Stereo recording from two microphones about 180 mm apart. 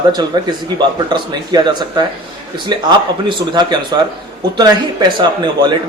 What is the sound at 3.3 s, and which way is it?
A man's voice, 25° right (ahead or behind).